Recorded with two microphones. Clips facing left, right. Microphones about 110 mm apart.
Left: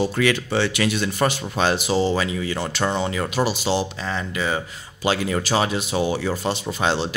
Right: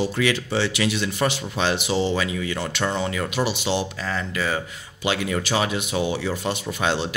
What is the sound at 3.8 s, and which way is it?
Speech, 20° left (ahead or behind).